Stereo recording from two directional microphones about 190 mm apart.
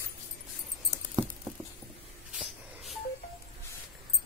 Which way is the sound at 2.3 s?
Centre (ahead or behind).